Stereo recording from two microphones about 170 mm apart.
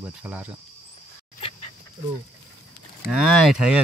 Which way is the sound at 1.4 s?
35° left (ahead or behind).